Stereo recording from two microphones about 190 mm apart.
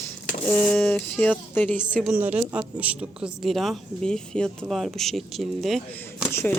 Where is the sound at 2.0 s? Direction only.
5° right (ahead or behind).